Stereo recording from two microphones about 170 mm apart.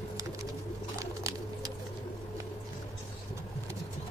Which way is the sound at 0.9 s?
20° right (ahead or behind).